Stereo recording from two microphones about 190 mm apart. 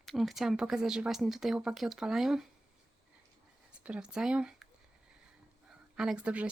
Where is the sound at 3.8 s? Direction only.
5° right (ahead or behind).